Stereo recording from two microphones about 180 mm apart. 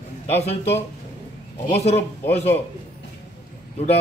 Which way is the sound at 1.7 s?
35° left (ahead or behind).